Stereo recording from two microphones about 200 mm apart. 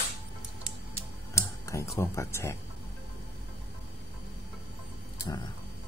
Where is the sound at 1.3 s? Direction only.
15° left (ahead or behind).